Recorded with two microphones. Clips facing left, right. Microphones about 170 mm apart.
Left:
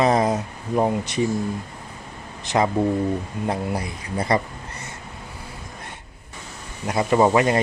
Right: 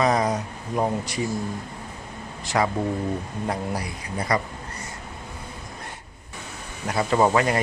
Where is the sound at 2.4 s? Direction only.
20° left (ahead or behind).